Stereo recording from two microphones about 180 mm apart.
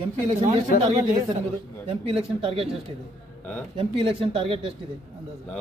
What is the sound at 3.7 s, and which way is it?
Speech, 30° right (ahead or behind).